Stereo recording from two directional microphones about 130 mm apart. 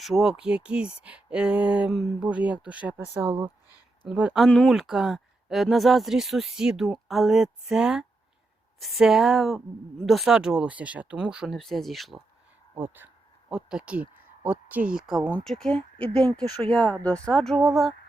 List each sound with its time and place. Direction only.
0.0 s speech: centre (ahead or behind)
4.4 s speech: 5° left (ahead or behind)
12.7 s speech: 15° right (ahead or behind)